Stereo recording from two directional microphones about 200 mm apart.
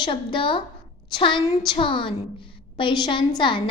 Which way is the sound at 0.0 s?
25° left (ahead or behind).